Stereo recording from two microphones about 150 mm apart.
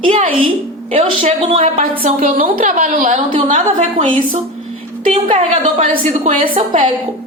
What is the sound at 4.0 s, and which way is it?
Speech, 35° right (ahead or behind).